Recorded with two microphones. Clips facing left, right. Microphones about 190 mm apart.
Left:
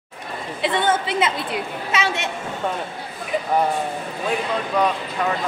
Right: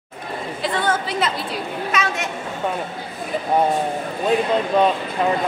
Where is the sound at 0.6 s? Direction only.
25° left (ahead or behind).